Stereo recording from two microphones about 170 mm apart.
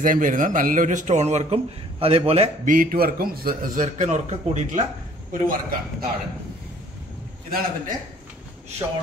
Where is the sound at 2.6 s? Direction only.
55° right (ahead or behind).